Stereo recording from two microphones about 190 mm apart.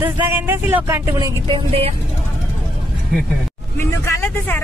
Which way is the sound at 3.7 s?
10° left (ahead or behind).